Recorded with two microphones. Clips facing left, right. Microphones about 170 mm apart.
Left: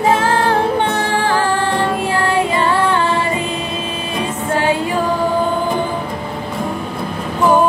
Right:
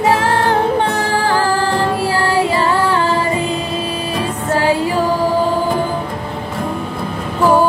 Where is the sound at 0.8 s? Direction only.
35° right (ahead or behind).